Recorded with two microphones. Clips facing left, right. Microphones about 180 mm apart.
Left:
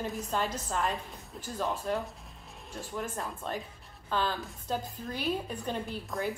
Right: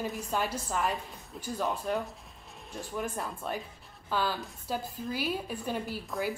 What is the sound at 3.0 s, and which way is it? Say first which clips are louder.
A woman's voice: right 2 dB; 15° right (ahead or behind).